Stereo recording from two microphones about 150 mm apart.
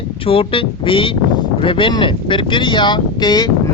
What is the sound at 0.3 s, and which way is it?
Speech, 35° left (ahead or behind).